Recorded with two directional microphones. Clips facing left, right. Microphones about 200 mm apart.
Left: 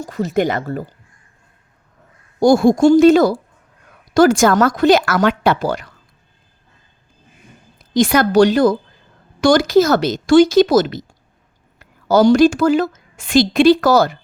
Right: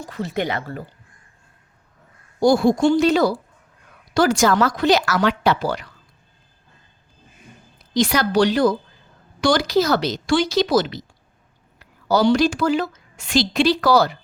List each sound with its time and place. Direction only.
0.0 s speech: 45° left (ahead or behind)
2.4 s speech: 45° left (ahead or behind)
7.9 s a woman's voice: 50° left (ahead or behind)